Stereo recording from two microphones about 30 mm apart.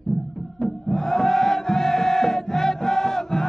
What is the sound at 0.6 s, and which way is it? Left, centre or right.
Chant, centre.